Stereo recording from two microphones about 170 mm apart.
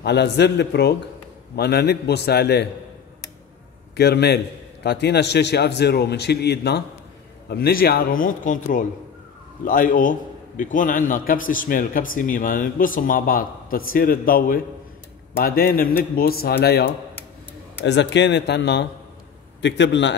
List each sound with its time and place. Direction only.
0.0 s a man's voice: 80° left
3.9 s a man's voice: 75° left (ahead or behind)
7.4 s a man's voice: 65° left (ahead or behind)
17.8 s speech: 90° left